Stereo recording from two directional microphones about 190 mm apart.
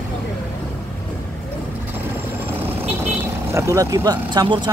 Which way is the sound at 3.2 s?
15° right (ahead or behind).